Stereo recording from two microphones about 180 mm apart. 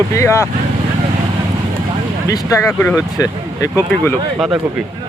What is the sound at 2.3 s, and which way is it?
Speech, 15° left (ahead or behind).